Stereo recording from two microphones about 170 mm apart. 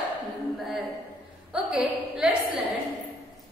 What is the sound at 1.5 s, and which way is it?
Speech, 5° right (ahead or behind).